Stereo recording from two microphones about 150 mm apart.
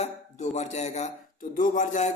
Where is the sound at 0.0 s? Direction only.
50° left (ahead or behind).